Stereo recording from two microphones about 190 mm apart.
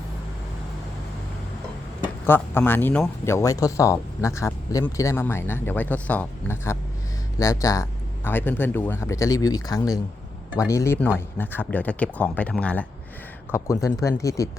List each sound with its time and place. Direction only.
2.2 s speech: 10° left (ahead or behind)